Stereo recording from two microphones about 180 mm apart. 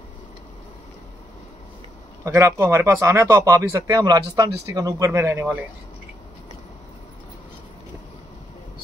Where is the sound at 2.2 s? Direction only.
15° right (ahead or behind).